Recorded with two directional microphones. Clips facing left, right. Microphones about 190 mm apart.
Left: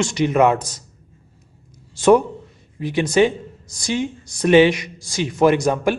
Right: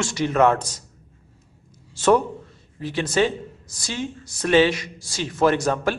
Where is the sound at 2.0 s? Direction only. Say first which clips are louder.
Left 4 dB; 15° left (ahead or behind).